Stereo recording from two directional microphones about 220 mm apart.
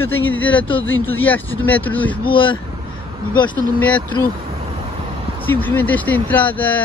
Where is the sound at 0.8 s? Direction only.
65° left (ahead or behind).